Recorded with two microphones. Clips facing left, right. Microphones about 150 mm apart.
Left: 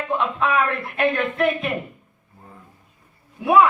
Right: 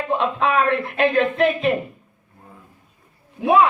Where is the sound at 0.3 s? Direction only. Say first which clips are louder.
Right 4 dB; 30° right (ahead or behind).